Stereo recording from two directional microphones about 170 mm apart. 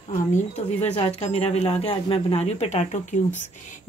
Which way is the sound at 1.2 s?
40° left (ahead or behind).